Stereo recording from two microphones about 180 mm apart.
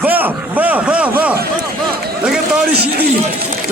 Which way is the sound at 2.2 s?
5° right (ahead or behind).